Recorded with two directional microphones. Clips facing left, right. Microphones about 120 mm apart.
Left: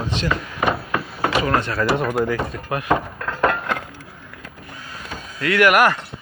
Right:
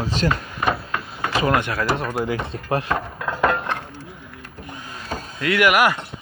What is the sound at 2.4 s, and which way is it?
Speech, 30° right (ahead or behind).